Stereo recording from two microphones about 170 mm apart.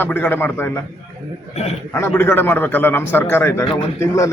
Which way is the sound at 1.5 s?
40° left (ahead or behind).